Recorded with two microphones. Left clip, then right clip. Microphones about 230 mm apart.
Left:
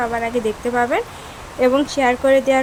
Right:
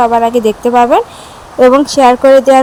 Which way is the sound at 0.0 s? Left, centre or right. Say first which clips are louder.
Right 12 dB; centre.